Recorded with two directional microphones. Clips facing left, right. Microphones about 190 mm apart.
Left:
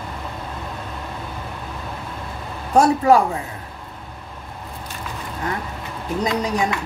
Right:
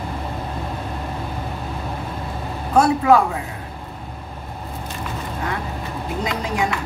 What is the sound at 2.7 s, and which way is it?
Speech, 40° left (ahead or behind).